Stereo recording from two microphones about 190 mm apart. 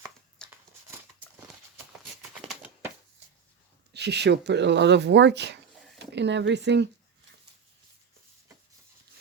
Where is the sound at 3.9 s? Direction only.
60° right (ahead or behind).